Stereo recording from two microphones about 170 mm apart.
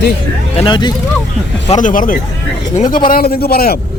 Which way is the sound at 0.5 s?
30° left (ahead or behind).